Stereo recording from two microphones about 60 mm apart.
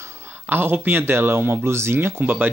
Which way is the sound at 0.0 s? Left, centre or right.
Right.